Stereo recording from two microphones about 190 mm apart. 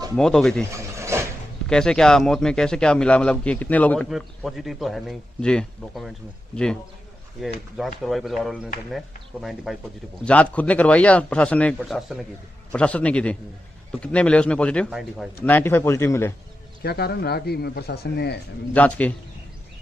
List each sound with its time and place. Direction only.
0.1 s a man's voice: 5° left (ahead or behind)
0.7 s a sound: 15° right (ahead or behind)
1.7 s a man's voice: 5° left (ahead or behind)
15.4 s speech: 10° left (ahead or behind)
16.8 s speech: 55° left (ahead or behind)
18.7 s speech: 5° left (ahead or behind)